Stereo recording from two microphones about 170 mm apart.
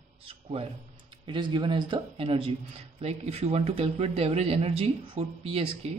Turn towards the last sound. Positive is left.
turn(degrees=-35)  # may be behind; listen again after turning